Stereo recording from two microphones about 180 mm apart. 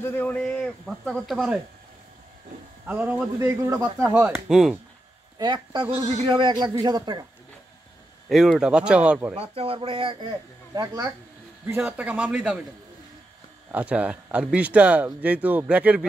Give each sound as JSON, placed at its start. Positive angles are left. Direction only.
{"t": 0.0, "sound": "a man's voice", "side_deg": 10}
{"t": 2.9, "sound": "speech", "side_deg": -10}
{"t": 5.4, "sound": "a man's voice", "side_deg": -25}
{"t": 8.3, "sound": "a man's voice", "side_deg": 0}
{"t": 9.3, "sound": "a man's voice", "side_deg": -30}
{"t": 13.7, "sound": "speech", "side_deg": -10}